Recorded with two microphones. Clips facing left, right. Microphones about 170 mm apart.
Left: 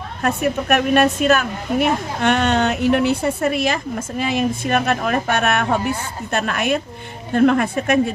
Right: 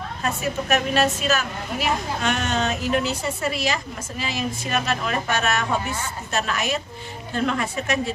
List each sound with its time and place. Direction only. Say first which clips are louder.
0.4 s speech: left 4 dB; 60° left (ahead or behind)